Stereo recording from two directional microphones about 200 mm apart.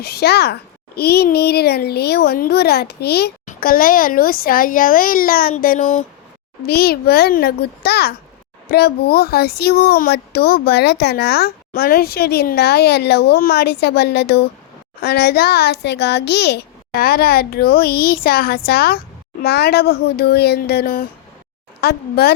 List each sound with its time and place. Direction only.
0.0 s a child's voice: 55° left (ahead or behind)
6.7 s a child's voice: 50° left (ahead or behind)